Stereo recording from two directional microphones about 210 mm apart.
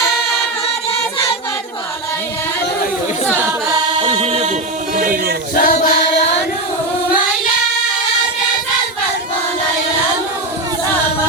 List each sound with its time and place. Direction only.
3.3 s chant: 15° right (ahead or behind); by 4.5 s 30° right (ahead or behind)
4.9 s a sound: 40° right (ahead or behind)
5.5 s choir: 40° left (ahead or behind)